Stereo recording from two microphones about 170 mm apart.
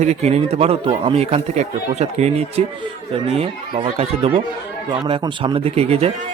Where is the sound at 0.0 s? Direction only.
40° right (ahead or behind).